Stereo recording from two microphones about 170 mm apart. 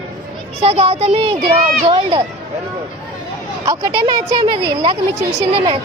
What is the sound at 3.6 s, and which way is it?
Speech, 20° right (ahead or behind).